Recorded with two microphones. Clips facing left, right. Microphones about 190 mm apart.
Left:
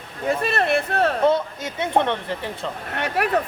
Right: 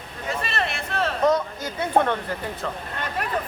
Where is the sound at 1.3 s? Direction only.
25° left (ahead or behind).